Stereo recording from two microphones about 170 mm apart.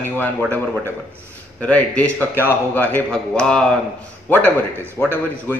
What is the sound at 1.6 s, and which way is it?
A man's voice, 10° left (ahead or behind).